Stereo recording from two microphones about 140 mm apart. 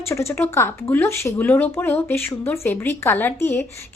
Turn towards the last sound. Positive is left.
turn(degrees=15)  # may be behind; listen again after turning